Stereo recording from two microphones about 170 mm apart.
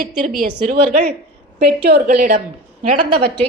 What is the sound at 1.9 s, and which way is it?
Speech, 50° right (ahead or behind).